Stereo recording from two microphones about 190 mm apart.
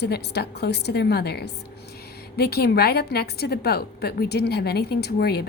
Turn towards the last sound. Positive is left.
turn(degrees=55)  # may be behind; listen again after turning